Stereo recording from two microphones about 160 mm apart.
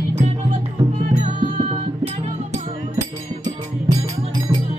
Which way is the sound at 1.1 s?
45° right (ahead or behind).